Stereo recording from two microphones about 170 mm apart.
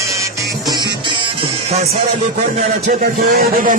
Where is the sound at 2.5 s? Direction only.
50° right (ahead or behind).